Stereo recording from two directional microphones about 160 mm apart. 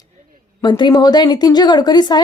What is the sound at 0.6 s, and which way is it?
A woman's voice, 30° left (ahead or behind).